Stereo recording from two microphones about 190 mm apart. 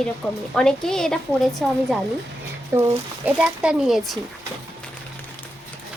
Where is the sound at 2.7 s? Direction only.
15° right (ahead or behind).